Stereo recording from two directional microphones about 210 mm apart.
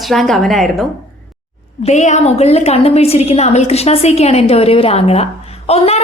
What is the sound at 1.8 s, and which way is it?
A woman's voice, 35° left (ahead or behind).